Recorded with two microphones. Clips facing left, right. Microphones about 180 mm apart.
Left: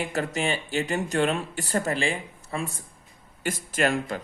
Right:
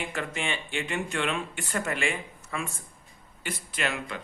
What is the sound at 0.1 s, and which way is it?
Speech, 40° left (ahead or behind).